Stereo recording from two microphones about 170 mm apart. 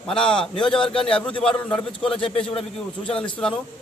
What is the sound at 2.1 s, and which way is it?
Speech, 30° left (ahead or behind).